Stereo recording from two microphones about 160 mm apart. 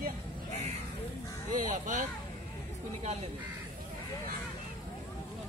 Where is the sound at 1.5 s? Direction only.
55° right (ahead or behind).